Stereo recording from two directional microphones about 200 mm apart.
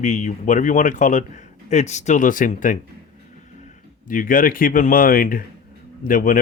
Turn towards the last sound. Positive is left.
turn(degrees=45)  # may be behind; listen again after turning